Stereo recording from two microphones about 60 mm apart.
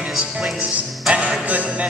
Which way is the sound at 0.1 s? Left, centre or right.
Centre.